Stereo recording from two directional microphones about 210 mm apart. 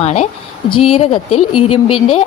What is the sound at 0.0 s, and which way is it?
Speech, 30° left (ahead or behind).